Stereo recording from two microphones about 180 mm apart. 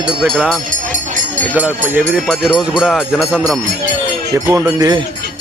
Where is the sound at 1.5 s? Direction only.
5° right (ahead or behind).